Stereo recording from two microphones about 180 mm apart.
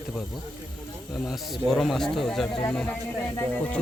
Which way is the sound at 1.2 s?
Centre (ahead or behind).